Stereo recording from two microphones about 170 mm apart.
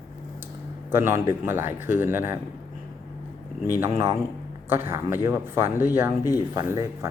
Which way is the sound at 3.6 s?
15° right (ahead or behind).